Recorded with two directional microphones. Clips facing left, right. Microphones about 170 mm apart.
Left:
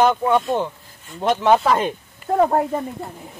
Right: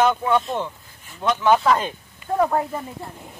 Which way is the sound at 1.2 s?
30° left (ahead or behind).